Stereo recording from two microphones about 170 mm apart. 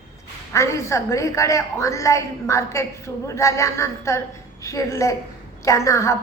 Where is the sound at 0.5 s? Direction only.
15° left (ahead or behind).